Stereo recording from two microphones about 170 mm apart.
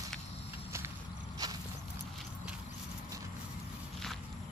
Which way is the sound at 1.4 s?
20° right (ahead or behind).